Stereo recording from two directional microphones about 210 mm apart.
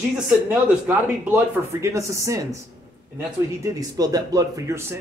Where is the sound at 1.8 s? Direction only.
15° right (ahead or behind).